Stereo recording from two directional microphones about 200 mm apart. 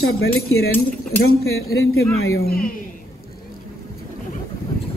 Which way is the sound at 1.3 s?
90° left.